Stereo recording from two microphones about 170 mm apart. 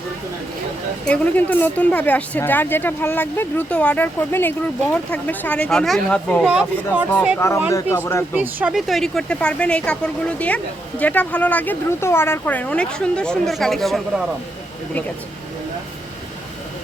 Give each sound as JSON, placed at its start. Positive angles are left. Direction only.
{"t": 1.0, "sound": "speech", "side_deg": 5}
{"t": 6.5, "sound": "speech", "side_deg": -5}
{"t": 7.3, "sound": "speech", "side_deg": 15}
{"t": 8.4, "sound": "speech", "side_deg": -10}